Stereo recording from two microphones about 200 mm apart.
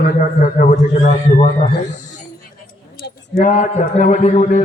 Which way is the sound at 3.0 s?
45° left (ahead or behind).